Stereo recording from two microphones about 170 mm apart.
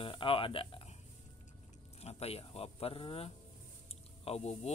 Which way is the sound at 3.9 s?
35° left (ahead or behind).